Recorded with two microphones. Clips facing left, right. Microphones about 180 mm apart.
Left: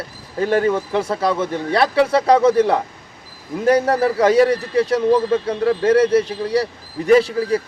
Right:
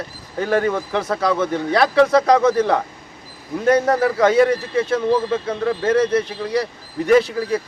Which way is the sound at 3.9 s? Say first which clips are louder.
Left 1 dB; 35° left (ahead or behind).